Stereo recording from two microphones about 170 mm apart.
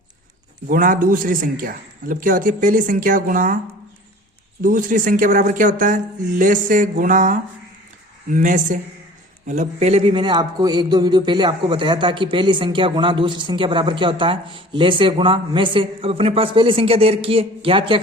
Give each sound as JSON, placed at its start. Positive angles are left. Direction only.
{"t": 0.7, "sound": "a man's voice", "side_deg": -55}
{"t": 4.6, "sound": "a man's voice", "side_deg": -50}